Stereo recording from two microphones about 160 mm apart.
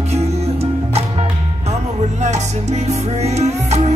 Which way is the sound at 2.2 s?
45° right (ahead or behind).